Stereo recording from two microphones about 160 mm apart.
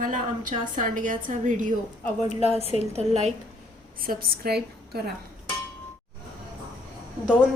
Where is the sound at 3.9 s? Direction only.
65° right (ahead or behind); by 5.1 s 80° right.